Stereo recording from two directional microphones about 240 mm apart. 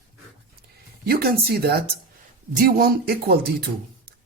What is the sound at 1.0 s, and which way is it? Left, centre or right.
Speech, right.